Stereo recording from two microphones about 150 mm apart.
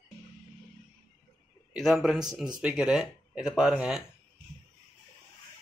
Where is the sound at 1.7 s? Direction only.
Centre (ahead or behind).